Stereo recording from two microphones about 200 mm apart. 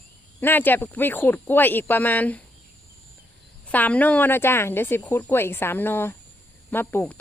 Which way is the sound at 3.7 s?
5° left (ahead or behind).